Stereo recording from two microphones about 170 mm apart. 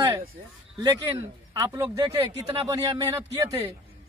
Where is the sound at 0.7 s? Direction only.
20° right (ahead or behind).